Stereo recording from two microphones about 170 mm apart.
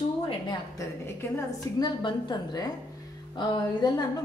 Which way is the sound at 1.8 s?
25° left (ahead or behind).